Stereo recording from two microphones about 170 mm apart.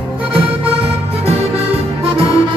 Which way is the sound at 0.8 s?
35° right (ahead or behind).